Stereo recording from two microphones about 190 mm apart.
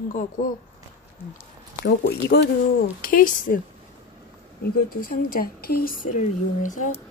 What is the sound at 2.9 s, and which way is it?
Speech, 50° left (ahead or behind).